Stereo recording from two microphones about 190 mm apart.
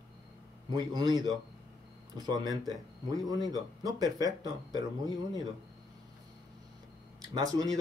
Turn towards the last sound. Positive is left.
turn(degrees=-20)  # may be behind; listen again after turning